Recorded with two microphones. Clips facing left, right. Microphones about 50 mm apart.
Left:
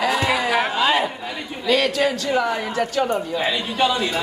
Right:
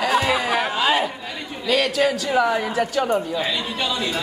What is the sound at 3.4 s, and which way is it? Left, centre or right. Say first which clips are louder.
Speech: left 4 dB; centre.